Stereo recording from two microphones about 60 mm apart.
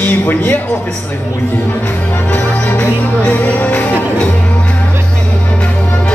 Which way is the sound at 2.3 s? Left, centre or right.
Left.